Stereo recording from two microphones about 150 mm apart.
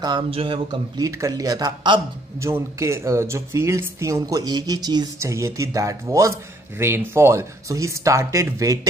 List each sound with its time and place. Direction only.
0.0 s speech: 35° right (ahead or behind)